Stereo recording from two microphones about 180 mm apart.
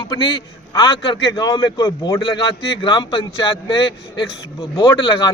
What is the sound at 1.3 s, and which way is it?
Speech, 20° left (ahead or behind).